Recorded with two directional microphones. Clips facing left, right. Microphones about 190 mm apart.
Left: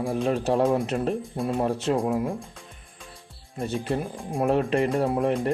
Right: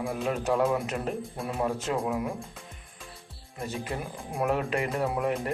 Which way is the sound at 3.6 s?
30° left (ahead or behind).